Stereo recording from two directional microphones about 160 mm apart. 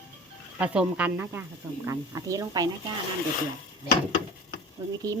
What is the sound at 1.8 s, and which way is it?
Speech, 20° right (ahead or behind).